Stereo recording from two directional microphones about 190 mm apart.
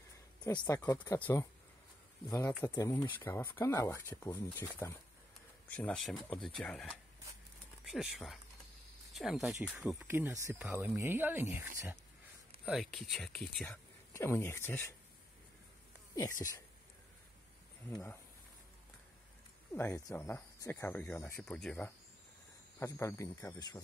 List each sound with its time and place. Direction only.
0.7 s speech: 20° left (ahead or behind)
2.6 s speech: 15° left (ahead or behind)
7.9 s speech: centre (ahead or behind)
12.6 s speech: centre (ahead or behind)
14.1 s speech: 15° left (ahead or behind)
16.2 s speech: 15° left (ahead or behind)
17.8 s speech: 10° left (ahead or behind)
19.7 s speech: 15° left (ahead or behind)